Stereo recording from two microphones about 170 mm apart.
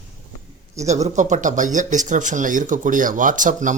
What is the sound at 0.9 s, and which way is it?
Speech, 40° right (ahead or behind).